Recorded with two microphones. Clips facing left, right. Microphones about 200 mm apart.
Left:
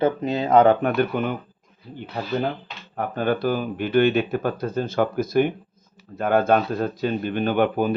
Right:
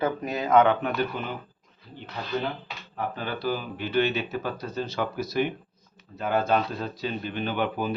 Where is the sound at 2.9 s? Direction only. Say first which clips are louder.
Left 8 dB; 50° left (ahead or behind).